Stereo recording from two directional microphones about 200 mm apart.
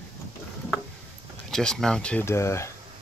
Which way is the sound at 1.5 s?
Centre (ahead or behind).